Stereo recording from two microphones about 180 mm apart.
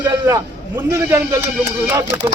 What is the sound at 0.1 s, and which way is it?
A man's voice, 20° right (ahead or behind).